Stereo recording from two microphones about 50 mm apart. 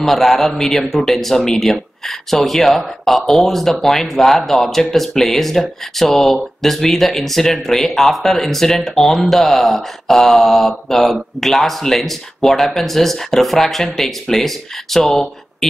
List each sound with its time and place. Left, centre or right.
0.0 s speech: centre